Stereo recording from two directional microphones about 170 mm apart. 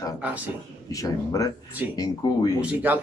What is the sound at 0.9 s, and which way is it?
Speech, 20° left (ahead or behind).